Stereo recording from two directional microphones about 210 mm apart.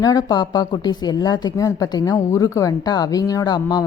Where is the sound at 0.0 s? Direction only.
20° left (ahead or behind).